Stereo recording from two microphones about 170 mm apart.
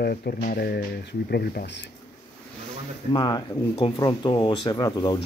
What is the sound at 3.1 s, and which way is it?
Speech, 25° left (ahead or behind).